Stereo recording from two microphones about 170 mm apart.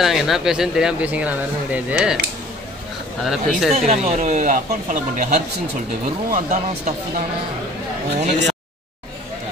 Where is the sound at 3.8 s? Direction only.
45° right (ahead or behind).